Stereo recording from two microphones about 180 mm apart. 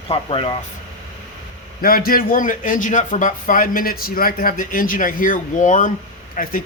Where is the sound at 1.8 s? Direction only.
55° left (ahead or behind).